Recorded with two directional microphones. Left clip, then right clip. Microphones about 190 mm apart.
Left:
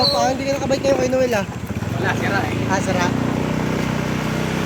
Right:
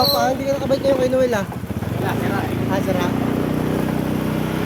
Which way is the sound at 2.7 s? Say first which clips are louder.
Left 1 dB; 20° left (ahead or behind).